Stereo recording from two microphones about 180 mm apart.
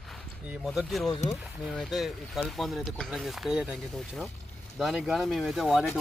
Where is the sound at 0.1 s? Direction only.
Centre (ahead or behind).